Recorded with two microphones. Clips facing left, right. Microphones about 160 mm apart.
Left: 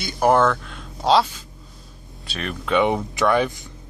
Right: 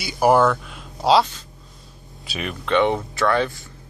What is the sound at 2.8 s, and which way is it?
Speech, 10° left (ahead or behind).